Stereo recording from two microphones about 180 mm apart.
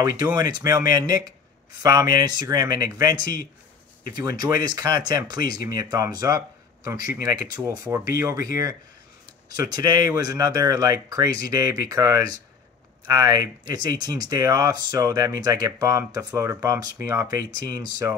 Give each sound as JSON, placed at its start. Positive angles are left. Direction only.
{"t": 0.0, "sound": "speech", "side_deg": -20}
{"t": 9.6, "sound": "speech", "side_deg": -20}